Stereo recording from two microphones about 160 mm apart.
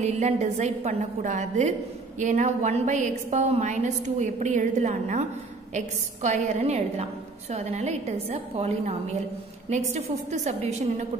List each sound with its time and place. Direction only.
0.0 s a woman's voice: 45° right (ahead or behind)